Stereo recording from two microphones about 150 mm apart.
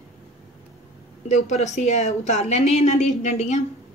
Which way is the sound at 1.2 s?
50° left (ahead or behind).